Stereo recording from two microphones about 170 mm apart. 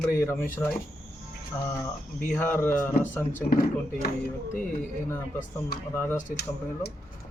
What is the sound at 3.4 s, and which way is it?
Speech, 60° left (ahead or behind).